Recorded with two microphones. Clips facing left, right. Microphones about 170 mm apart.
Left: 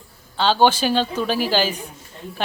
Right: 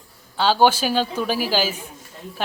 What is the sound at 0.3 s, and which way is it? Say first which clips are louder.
A woman's voice: even; 10° right (ahead or behind).